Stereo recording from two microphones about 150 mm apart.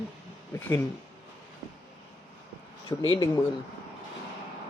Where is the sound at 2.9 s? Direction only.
35° left (ahead or behind).